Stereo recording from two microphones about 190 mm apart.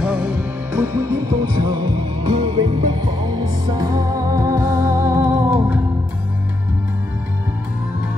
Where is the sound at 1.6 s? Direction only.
25° right (ahead or behind).